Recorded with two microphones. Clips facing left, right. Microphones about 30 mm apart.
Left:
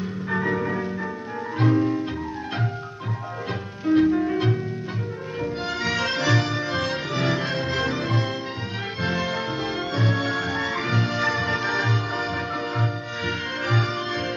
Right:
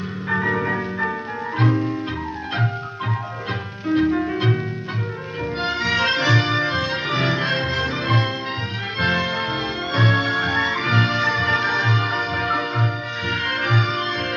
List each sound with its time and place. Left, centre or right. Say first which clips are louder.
0.3 s music: right 4 dB; right
3.8 s music: even; centre
5.6 s music: right 6 dB; right
7.7 s music: right 1 dB; centre
8.0 s music: right 4 dB; right
13.7 s music: right 4 dB; right